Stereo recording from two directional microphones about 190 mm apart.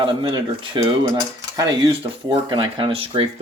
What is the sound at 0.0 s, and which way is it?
Speech, 25° right (ahead or behind).